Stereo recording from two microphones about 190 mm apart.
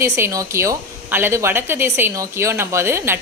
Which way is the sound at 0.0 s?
15° right (ahead or behind).